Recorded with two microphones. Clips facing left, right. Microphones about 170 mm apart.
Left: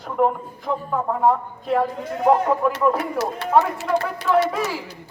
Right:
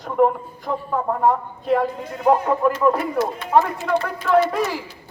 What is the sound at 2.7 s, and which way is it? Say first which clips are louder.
Speech: right 2 dB; 70° left (ahead or behind).